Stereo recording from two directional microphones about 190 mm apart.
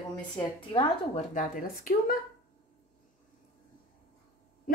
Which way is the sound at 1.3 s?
45° left (ahead or behind).